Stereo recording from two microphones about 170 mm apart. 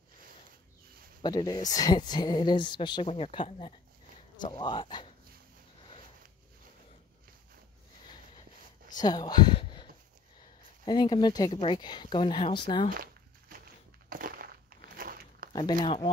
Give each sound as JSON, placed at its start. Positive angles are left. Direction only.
{"t": 1.2, "sound": "speech", "side_deg": 20}
{"t": 9.0, "sound": "speech", "side_deg": 25}
{"t": 10.9, "sound": "speech", "side_deg": 25}
{"t": 12.9, "sound": "a sound", "side_deg": -55}
{"t": 14.0, "sound": "crushing", "side_deg": -60}
{"t": 15.0, "sound": "a sound", "side_deg": -60}
{"t": 15.8, "sound": "speech", "side_deg": 30}